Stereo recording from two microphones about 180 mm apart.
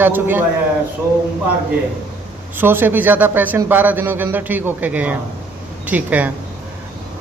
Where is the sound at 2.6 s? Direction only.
10° right (ahead or behind).